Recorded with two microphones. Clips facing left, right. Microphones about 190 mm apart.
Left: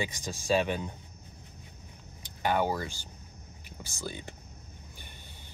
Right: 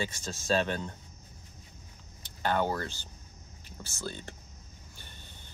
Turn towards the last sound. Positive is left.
turn(degrees=15)  # may be behind; listen again after turning